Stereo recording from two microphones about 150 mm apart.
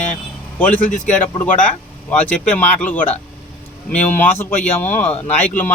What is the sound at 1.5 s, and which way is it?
Speech, 60° left (ahead or behind).